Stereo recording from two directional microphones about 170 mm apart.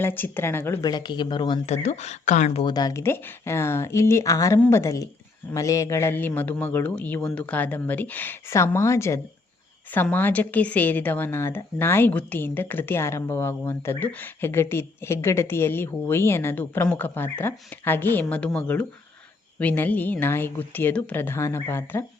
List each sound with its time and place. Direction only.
0.0 s speech: 10° left (ahead or behind); by 1.7 s 30° left (ahead or behind)
1.7 s a woman's voice: 40° left (ahead or behind); by 22.0 s 15° left (ahead or behind)